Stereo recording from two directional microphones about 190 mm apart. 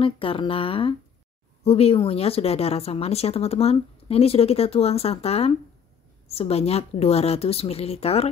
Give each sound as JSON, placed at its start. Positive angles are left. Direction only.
{"t": 0.0, "sound": "speech", "side_deg": 30}